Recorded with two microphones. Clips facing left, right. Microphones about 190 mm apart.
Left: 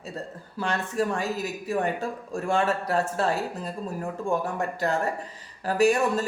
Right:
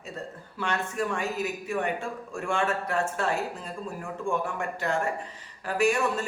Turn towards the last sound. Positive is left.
turn(degrees=35)  # may be behind; listen again after turning